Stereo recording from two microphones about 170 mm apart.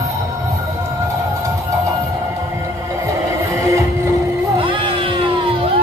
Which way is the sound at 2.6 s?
20° right (ahead or behind).